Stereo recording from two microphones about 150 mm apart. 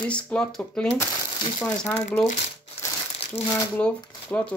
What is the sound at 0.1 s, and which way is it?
Speech, 5° left (ahead or behind).